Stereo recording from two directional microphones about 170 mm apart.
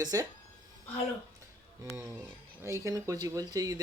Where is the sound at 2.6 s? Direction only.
15° right (ahead or behind).